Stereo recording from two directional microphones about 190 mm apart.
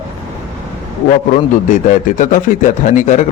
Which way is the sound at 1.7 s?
40° left (ahead or behind).